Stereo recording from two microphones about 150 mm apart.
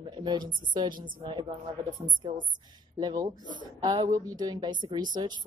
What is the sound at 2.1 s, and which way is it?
A woman's voice, 30° right (ahead or behind).